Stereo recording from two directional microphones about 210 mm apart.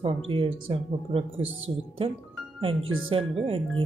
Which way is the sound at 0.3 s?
25° right (ahead or behind).